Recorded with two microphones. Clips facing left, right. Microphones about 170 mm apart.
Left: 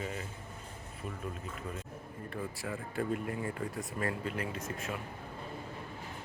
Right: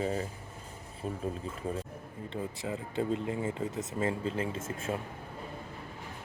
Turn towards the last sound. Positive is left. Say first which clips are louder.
# right 4 dB
turn(degrees=-25)  # may be behind; listen again after turning